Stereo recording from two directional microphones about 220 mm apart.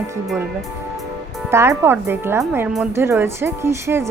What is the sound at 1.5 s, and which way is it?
Speech, 10° right (ahead or behind).